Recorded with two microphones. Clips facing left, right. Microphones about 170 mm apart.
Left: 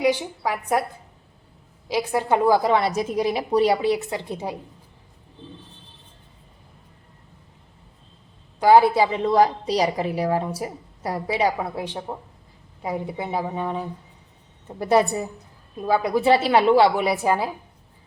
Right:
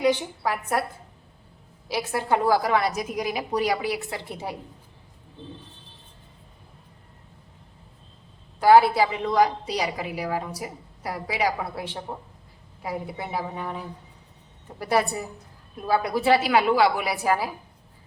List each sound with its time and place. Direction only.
0.0 s a woman's voice: 10° left (ahead or behind)
1.9 s a woman's voice: 15° left (ahead or behind)
8.5 s a woman's voice: 15° left (ahead or behind)
9.3 s a woman's voice: 35° left (ahead or behind)
14.8 s a woman's voice: 20° left (ahead or behind)